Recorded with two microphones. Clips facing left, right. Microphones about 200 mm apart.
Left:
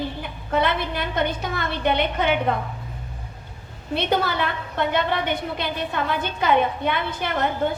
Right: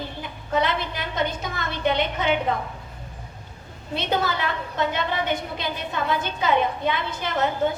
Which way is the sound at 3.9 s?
60° left (ahead or behind).